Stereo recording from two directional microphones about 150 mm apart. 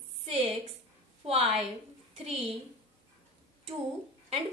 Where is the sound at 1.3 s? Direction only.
40° right (ahead or behind).